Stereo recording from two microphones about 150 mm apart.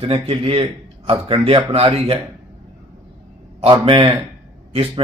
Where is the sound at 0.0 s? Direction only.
40° right (ahead or behind).